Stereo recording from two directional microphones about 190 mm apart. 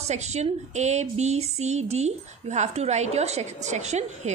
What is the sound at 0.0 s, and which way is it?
Speech, 35° right (ahead or behind).